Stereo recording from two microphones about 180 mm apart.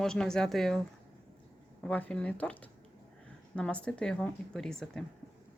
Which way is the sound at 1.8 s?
5° left (ahead or behind).